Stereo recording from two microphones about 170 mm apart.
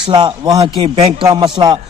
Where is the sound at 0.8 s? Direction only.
35° right (ahead or behind).